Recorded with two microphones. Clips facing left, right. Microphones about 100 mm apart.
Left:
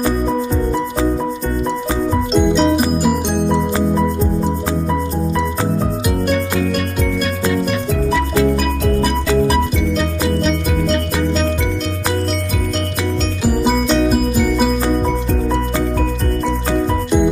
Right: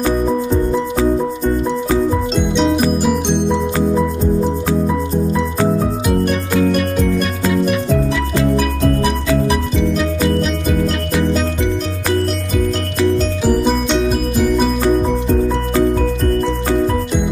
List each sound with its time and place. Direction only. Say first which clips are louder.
2.3 s music: left 5 dB; centre (ahead or behind)
7.5 s music: right 3 dB; centre (ahead or behind)
10.4 s music: even; centre (ahead or behind)
13.5 s music: even; 5° left (ahead or behind)